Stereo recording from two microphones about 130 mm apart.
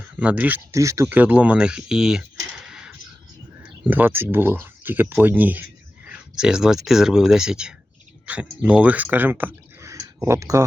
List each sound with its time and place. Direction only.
0.2 s speech: 10° right (ahead or behind)
0.7 s speech: 25° right (ahead or behind)
1.1 s speech: 10° right (ahead or behind)